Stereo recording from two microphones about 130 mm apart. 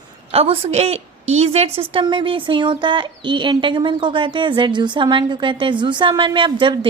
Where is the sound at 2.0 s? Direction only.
40° right (ahead or behind).